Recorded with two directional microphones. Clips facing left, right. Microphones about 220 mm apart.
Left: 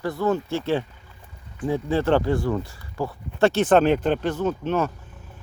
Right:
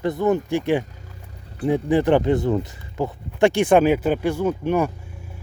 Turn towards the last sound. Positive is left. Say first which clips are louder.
# right 3 dB
turn(degrees=-15)  # may be behind; listen again after turning